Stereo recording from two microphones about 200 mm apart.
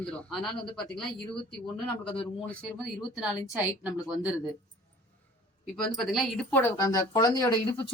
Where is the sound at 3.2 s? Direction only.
5° right (ahead or behind).